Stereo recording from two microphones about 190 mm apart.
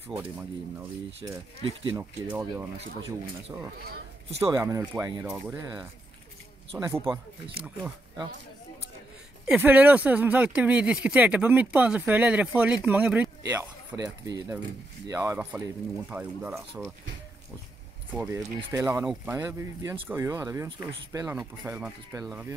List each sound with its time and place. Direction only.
0.1 s speech: 10° right (ahead or behind)
4.5 s speech: 15° right (ahead or behind)
9.5 s speech: 10° right (ahead or behind)
18.1 s speech: 15° right (ahead or behind)